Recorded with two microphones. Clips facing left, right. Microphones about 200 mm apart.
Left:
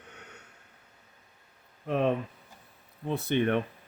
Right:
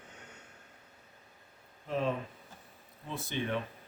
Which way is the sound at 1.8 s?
65° left (ahead or behind).